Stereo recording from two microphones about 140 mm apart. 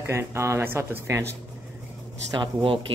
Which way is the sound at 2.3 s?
35° right (ahead or behind).